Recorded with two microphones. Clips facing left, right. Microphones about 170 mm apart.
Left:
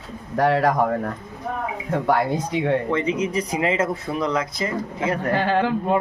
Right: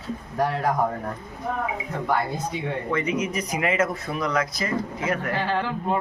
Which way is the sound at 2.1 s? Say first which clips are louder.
Left 4 dB; 90° left.